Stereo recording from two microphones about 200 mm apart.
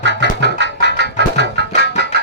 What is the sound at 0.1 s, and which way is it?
Music, 60° left (ahead or behind).